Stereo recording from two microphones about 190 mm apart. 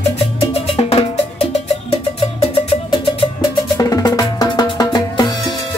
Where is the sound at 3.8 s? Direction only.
20° left (ahead or behind).